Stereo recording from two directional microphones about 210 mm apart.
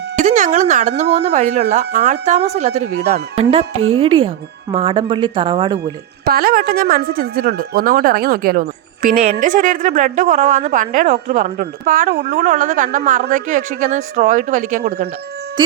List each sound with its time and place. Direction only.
0.2 s speech: 35° right (ahead or behind)
6.2 s speech: 45° right (ahead or behind)